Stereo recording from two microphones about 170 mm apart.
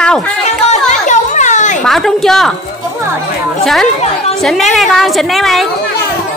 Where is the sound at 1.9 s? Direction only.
Centre (ahead or behind).